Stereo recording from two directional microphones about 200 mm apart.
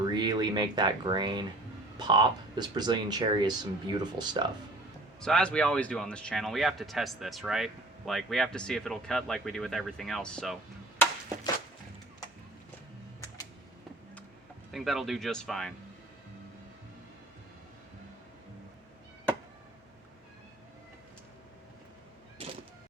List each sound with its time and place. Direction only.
0.0 s speech: 20° right (ahead or behind)
5.2 s speech: 5° left (ahead or behind)
10.9 s a sound: 10° left (ahead or behind)
14.7 s speech: centre (ahead or behind)